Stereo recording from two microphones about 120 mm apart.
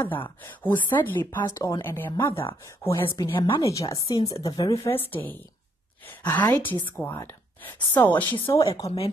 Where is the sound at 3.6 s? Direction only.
25° left (ahead or behind).